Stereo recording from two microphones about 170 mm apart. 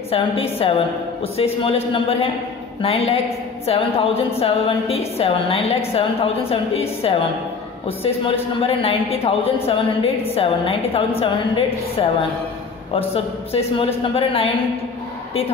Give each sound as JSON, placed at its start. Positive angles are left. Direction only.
{"t": 0.1, "sound": "speech", "side_deg": 35}